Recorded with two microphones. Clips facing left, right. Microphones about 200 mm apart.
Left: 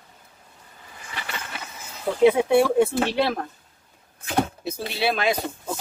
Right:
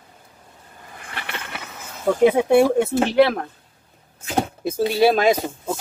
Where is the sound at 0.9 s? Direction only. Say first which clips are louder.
Right 2 dB; 60° right (ahead or behind).